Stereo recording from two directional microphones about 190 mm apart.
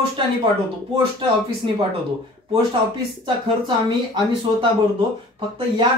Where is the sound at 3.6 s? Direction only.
25° right (ahead or behind).